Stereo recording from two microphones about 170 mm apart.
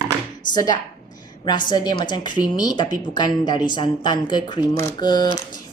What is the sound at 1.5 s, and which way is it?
Speech, 25° left (ahead or behind).